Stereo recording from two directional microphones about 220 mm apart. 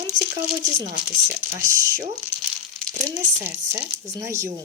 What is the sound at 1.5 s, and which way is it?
Speech, 10° right (ahead or behind).